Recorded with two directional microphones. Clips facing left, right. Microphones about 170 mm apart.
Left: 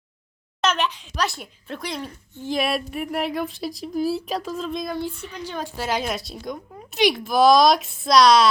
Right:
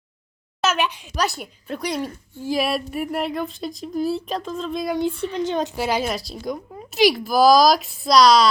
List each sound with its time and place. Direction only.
0.6 s speech: 10° right (ahead or behind)
4.9 s speech: 25° right (ahead or behind)
5.8 s speech: 5° right (ahead or behind)